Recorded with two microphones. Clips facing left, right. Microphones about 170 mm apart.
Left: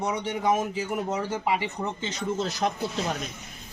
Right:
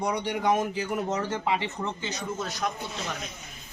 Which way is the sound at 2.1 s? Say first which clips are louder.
Left 4 dB; 30° left (ahead or behind).